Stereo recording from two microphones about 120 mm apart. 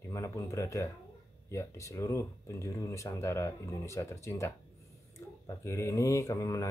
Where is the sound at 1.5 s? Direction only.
25° left (ahead or behind).